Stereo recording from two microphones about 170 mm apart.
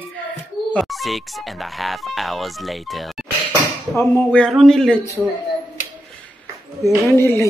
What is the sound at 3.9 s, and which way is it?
Speech, 10° left (ahead or behind).